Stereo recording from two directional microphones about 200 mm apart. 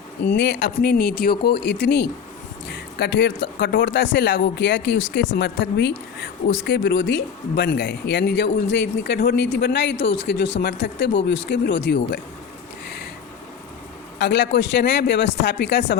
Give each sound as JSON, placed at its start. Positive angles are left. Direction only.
{"t": 0.2, "sound": "speech", "side_deg": 60}
{"t": 14.2, "sound": "speech", "side_deg": 60}